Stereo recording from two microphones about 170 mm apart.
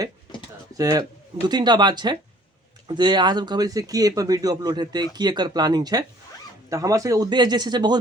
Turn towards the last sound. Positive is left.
turn(degrees=-25)  # may be behind; listen again after turning